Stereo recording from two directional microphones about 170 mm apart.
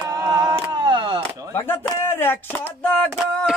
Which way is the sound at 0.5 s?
30° right (ahead or behind).